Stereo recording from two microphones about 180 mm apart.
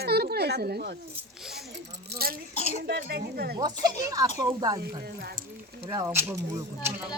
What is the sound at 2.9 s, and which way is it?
Speech, 60° right (ahead or behind).